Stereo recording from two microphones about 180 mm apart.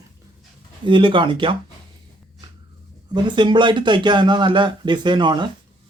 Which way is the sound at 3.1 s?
25° right (ahead or behind).